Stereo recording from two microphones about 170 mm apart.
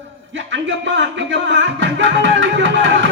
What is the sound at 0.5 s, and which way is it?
Music, 90° right.